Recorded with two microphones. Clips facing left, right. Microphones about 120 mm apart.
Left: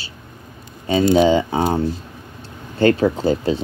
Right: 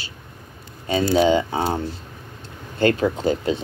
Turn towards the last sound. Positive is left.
turn(degrees=30)  # may be behind; listen again after turning